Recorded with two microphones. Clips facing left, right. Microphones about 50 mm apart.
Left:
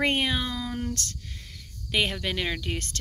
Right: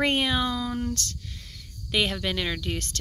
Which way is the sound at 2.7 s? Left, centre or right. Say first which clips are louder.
Right 1 dB; left.